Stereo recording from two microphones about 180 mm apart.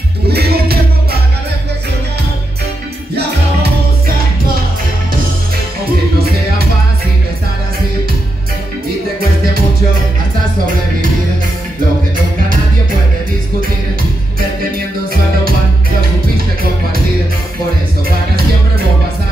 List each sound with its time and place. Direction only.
0.3 s music: 60° right (ahead or behind)